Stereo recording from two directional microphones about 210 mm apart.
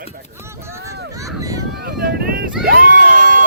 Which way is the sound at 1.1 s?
15° right (ahead or behind).